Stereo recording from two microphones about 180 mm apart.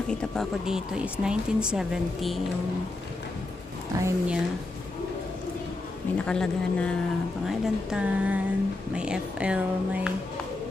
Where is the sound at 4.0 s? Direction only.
15° right (ahead or behind).